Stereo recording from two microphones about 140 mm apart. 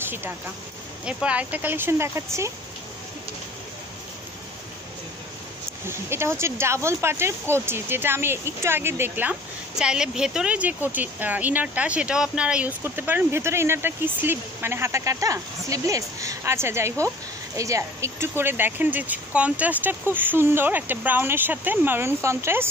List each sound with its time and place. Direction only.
0.0 s speech: 15° right (ahead or behind)
5.9 s speech: 15° right (ahead or behind)